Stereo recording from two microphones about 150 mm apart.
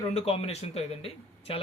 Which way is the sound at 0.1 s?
45° left (ahead or behind).